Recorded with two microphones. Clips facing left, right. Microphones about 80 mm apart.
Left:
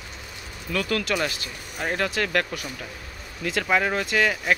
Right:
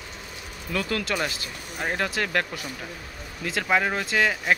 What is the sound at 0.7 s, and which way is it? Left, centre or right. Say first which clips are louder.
Speech: left 2 dB; centre.